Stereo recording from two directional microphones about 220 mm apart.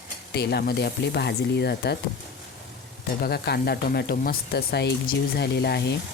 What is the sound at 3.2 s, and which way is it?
Speech, 45° left (ahead or behind).